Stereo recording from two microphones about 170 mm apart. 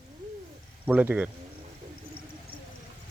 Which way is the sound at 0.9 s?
10° right (ahead or behind).